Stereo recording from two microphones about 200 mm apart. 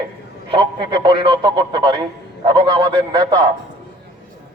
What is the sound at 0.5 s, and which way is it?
A man's voice, 25° right (ahead or behind).